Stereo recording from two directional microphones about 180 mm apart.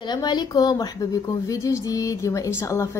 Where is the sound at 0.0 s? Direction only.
25° left (ahead or behind).